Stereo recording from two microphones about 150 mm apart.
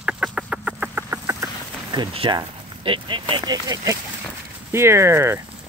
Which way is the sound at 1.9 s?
35° right (ahead or behind).